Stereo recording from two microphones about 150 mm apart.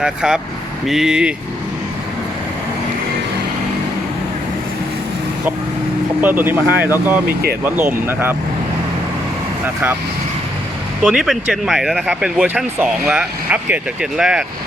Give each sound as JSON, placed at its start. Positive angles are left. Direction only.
{"t": 0.0, "sound": "speech", "side_deg": -5}
{"t": 6.2, "sound": "speech", "side_deg": -15}
{"t": 11.0, "sound": "speech", "side_deg": 0}